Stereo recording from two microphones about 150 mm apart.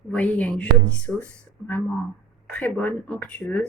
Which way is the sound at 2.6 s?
10° left (ahead or behind).